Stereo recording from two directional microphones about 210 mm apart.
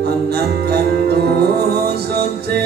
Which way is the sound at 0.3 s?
50° right (ahead or behind).